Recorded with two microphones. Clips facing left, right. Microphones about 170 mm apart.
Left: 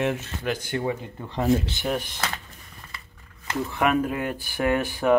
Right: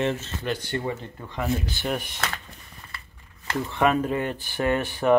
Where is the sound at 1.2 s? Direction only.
30° left (ahead or behind).